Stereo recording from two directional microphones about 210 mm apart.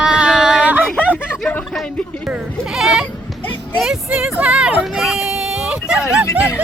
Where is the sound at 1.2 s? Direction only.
5° left (ahead or behind).